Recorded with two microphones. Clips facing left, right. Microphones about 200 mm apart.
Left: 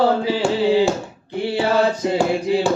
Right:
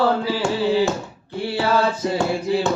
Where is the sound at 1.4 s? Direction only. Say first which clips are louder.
Left 2 dB; 25° left (ahead or behind).